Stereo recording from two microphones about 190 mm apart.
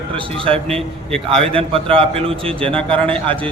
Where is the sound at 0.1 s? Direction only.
30° right (ahead or behind).